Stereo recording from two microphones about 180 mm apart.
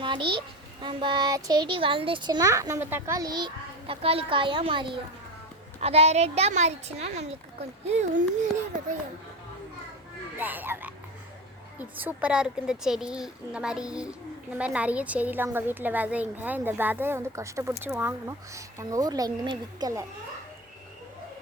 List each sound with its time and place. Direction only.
0.0 s a sound: 25° right (ahead or behind)
0.8 s a child's voice: 25° right (ahead or behind)
10.3 s a woman's voice: 10° right (ahead or behind)